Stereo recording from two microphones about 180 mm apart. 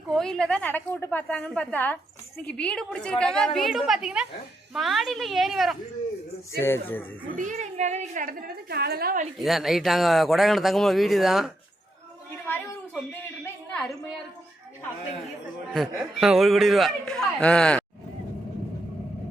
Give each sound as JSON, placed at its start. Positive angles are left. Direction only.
{"t": 0.1, "sound": "a woman's voice", "side_deg": 5}
{"t": 6.6, "sound": "a woman's voice", "side_deg": 10}
{"t": 7.3, "sound": "a woman's voice", "side_deg": -45}
{"t": 9.4, "sound": "a man's voice", "side_deg": 0}
{"t": 12.5, "sound": "a sound", "side_deg": 10}
{"t": 15.7, "sound": "a man's voice", "side_deg": 0}